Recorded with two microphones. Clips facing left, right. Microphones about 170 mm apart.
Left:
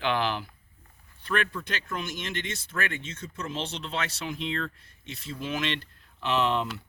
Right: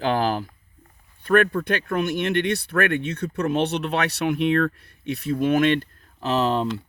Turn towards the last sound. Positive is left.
turn(degrees=-35)  # may be behind; listen again after turning